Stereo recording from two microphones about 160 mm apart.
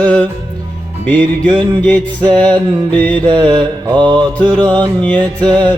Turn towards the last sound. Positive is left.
turn(degrees=5)  # may be behind; listen again after turning